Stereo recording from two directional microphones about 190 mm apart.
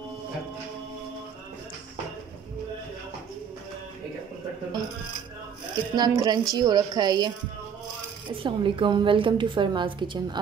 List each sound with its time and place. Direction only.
5.9 s a woman's voice: 20° right (ahead or behind)
8.4 s a woman's voice: 25° right (ahead or behind)